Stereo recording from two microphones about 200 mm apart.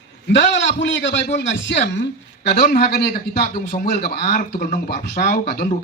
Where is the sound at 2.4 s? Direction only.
50° left (ahead or behind).